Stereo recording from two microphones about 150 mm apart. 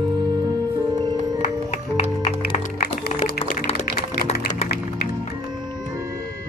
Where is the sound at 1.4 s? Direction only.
50° left (ahead or behind).